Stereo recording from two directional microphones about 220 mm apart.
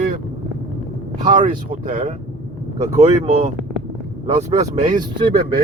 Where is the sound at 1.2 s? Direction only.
35° right (ahead or behind).